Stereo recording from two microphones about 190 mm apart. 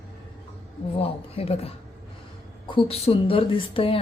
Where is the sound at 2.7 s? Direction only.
30° left (ahead or behind).